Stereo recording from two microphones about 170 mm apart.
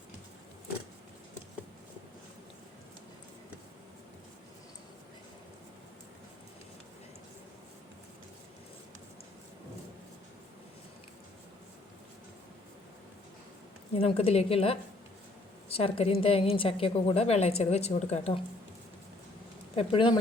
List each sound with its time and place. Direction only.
13.9 s a woman's voice: 35° left (ahead or behind)
19.7 s a woman's voice: 30° left (ahead or behind)